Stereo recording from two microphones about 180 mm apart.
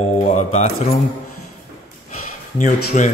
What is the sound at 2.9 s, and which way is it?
Speech, 45° left (ahead or behind).